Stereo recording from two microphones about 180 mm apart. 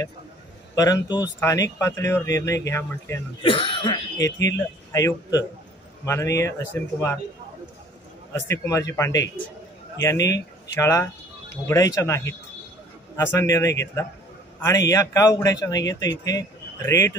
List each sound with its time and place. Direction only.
0.7 s speech: 20° left (ahead or behind)
3.4 s a man's voice: 30° left (ahead or behind); by 7.2 s 10° left (ahead or behind)
8.3 s a man's voice: 15° left (ahead or behind)